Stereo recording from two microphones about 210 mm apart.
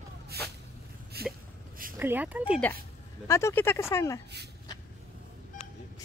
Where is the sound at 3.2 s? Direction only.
15° left (ahead or behind).